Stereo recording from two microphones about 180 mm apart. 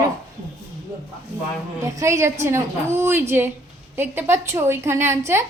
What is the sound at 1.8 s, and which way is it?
A woman's voice, 15° right (ahead or behind).